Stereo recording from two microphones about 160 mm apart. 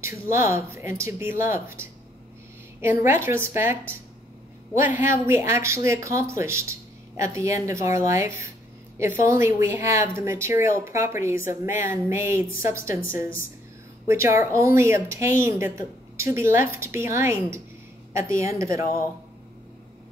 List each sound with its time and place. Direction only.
0.0 s speech: 15° right (ahead or behind)
14.0 s speech: 15° right (ahead or behind)